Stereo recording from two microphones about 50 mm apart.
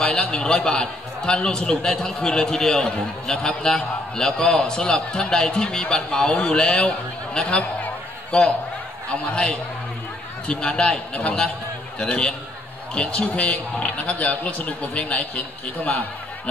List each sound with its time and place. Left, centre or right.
0.2 s a man's voice: centre